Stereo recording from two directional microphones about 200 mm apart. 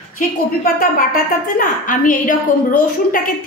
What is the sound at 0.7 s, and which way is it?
A woman's voice, 45° left (ahead or behind).